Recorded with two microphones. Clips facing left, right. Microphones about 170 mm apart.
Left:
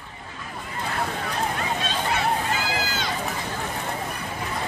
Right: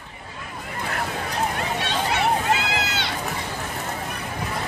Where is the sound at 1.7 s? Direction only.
70° right (ahead or behind).